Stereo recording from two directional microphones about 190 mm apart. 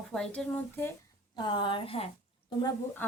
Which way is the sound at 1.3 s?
25° left (ahead or behind).